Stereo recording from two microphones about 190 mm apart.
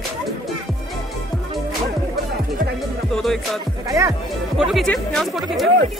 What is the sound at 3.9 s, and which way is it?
Speech, 15° right (ahead or behind).